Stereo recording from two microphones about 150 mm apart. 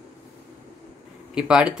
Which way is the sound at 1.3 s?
5° right (ahead or behind).